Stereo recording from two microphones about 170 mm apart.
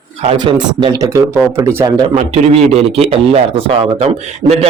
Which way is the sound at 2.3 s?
35° right (ahead or behind).